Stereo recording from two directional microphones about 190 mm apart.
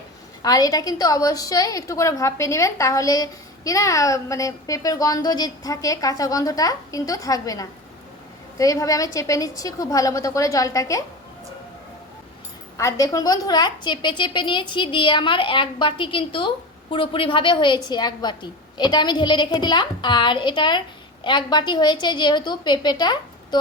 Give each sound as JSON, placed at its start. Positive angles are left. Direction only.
{"t": 0.4, "sound": "a woman's voice", "side_deg": 20}
{"t": 12.7, "sound": "a woman's voice", "side_deg": 15}